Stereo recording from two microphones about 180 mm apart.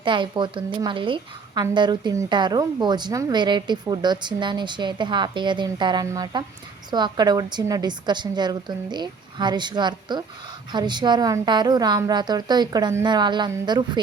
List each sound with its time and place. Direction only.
0.0 s speech: 25° right (ahead or behind)